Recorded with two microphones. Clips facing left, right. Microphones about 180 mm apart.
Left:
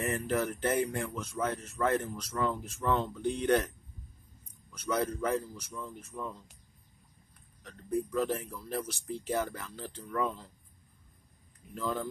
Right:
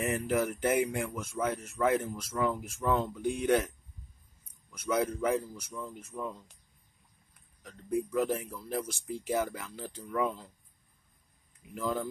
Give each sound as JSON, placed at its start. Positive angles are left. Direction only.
{"t": 0.1, "sound": "speech", "side_deg": -10}
{"t": 4.7, "sound": "speech", "side_deg": -10}
{"t": 7.6, "sound": "speech", "side_deg": -10}
{"t": 11.7, "sound": "speech", "side_deg": -10}